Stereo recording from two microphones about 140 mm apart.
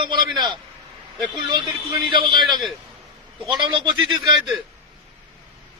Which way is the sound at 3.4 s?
35° right (ahead or behind).